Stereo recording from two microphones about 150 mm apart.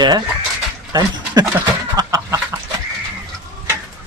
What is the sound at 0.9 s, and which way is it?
Speech, 25° right (ahead or behind).